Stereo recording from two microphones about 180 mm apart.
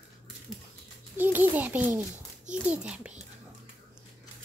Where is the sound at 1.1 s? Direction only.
10° right (ahead or behind).